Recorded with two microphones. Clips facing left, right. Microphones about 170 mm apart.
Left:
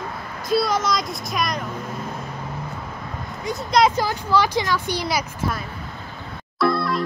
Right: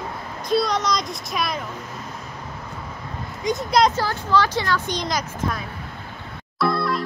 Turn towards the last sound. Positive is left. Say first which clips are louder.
# left 1 dB
turn(degrees=0)  # may be behind; listen again after turning